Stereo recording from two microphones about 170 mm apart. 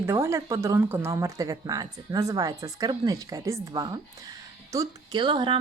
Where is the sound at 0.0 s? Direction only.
15° right (ahead or behind).